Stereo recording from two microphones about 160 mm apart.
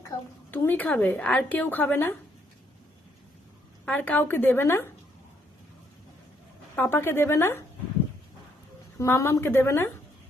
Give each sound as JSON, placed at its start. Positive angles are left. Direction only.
{"t": 0.5, "sound": "speech", "side_deg": 10}
{"t": 3.8, "sound": "speech", "side_deg": 10}
{"t": 6.7, "sound": "speech", "side_deg": 15}
{"t": 9.0, "sound": "speech", "side_deg": 15}